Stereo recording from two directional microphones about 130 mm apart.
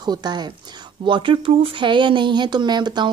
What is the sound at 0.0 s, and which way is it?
Speech, 35° right (ahead or behind).